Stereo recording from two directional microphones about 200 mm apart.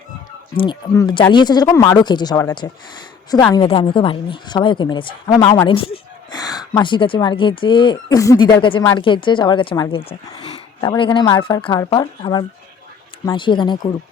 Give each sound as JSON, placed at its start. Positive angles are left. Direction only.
{"t": 0.5, "sound": "speech", "side_deg": 25}